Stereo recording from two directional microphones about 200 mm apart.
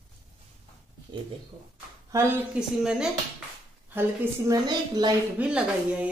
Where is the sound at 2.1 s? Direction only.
10° right (ahead or behind).